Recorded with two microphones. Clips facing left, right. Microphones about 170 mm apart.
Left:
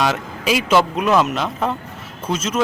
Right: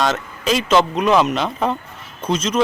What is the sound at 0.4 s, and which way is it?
Speech, 10° left (ahead or behind).